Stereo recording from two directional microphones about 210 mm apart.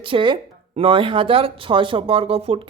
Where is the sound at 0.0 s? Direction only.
25° right (ahead or behind).